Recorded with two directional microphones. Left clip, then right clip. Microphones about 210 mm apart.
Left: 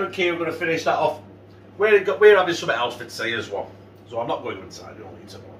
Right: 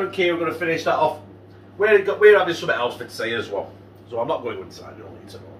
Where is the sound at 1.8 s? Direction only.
10° left (ahead or behind).